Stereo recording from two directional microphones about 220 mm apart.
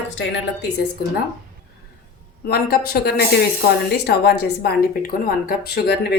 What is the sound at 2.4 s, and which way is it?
A woman's voice, 45° left (ahead or behind).